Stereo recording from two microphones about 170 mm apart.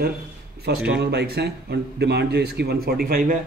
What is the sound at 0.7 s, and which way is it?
A man's voice, 75° right (ahead or behind).